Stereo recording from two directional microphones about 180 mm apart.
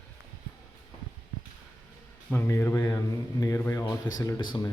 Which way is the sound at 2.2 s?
10° left (ahead or behind).